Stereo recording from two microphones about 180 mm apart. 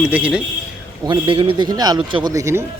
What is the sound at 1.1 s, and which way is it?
A man's voice, 30° right (ahead or behind).